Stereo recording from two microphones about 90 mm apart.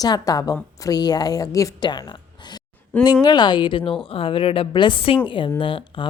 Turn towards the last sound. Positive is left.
turn(degrees=70)  # may be behind; listen again after turning